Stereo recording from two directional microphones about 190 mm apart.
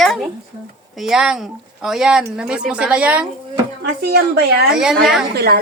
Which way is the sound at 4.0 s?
55° right (ahead or behind).